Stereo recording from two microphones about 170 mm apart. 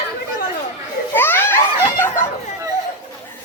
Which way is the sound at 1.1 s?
10° left (ahead or behind).